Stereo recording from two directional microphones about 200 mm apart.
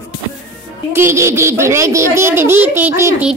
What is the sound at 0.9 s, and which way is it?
A child's voice, 15° right (ahead or behind).